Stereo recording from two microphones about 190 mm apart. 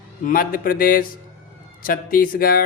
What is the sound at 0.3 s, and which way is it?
A man's voice, 50° left (ahead or behind).